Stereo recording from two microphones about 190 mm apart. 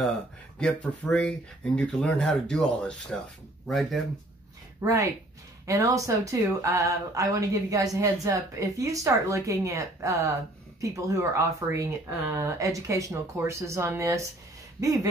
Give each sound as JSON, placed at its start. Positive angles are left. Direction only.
{"t": 0.6, "sound": "speech", "side_deg": 5}
{"t": 4.8, "sound": "speech", "side_deg": -15}